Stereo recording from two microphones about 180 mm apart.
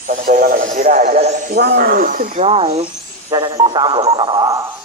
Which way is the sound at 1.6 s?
60° right (ahead or behind).